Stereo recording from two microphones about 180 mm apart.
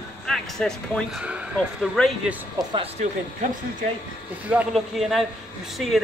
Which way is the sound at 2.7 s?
30° right (ahead or behind).